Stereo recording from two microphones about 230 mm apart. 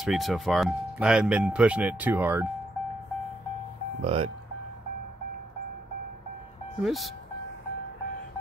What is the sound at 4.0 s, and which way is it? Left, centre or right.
Speech, right.